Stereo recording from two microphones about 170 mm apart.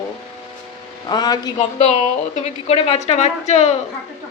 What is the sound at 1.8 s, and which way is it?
A woman's voice, 40° left (ahead or behind).